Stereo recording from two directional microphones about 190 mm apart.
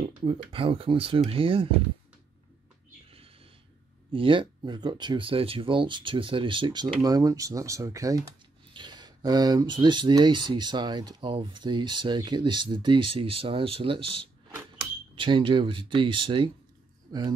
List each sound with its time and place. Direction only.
0.2 s speech: 30° right (ahead or behind)
4.1 s speech: 25° right (ahead or behind)